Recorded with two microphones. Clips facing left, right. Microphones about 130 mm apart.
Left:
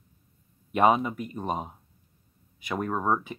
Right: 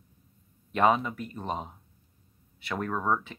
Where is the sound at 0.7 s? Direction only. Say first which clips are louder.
Left 2 dB; 15° left (ahead or behind).